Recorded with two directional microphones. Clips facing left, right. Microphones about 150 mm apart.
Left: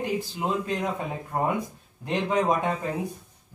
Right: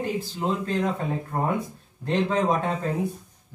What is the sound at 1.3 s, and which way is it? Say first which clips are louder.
A man's voice: left 2 dB; 15° left (ahead or behind).